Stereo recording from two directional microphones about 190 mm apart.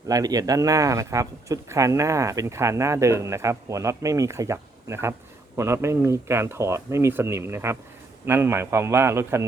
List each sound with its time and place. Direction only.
0.1 s speech: 20° right (ahead or behind)